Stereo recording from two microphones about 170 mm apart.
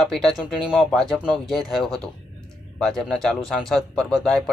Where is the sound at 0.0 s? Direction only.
Centre (ahead or behind).